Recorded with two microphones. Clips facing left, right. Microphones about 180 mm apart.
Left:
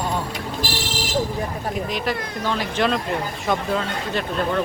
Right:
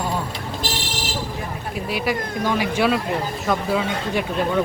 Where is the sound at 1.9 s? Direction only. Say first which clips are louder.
Right 2 dB; 10° right (ahead or behind).